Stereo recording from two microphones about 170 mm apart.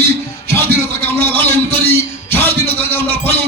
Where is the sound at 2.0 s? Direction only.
10° left (ahead or behind).